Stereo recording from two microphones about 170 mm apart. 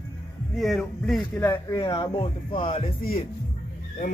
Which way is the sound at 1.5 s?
20° left (ahead or behind).